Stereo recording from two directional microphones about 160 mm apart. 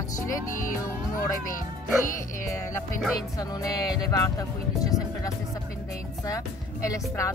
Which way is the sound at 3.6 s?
20° left (ahead or behind).